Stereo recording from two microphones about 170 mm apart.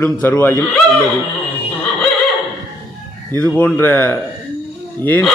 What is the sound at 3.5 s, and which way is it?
Speech, 10° left (ahead or behind).